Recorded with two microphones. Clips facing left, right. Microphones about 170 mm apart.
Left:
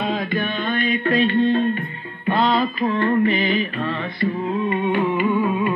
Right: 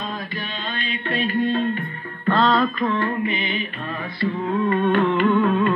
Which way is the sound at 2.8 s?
35° left (ahead or behind).